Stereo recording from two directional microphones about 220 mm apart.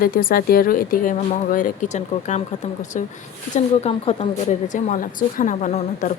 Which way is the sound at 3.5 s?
30° left (ahead or behind).